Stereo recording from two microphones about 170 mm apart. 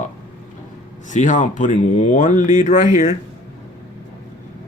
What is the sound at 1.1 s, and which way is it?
Speech, 45° left (ahead or behind).